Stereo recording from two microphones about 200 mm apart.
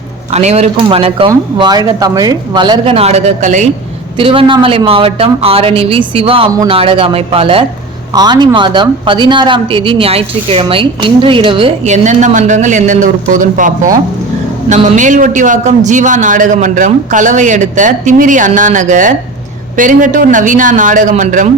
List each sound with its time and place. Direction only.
0.3 s a man's voice: 35° right (ahead or behind)